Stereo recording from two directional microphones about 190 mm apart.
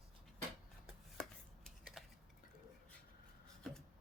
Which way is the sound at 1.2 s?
Centre (ahead or behind).